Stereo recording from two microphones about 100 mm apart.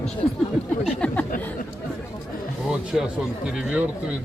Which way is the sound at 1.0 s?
10° left (ahead or behind).